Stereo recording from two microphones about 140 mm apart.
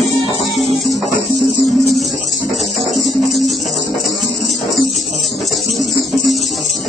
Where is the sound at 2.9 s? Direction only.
Centre (ahead or behind).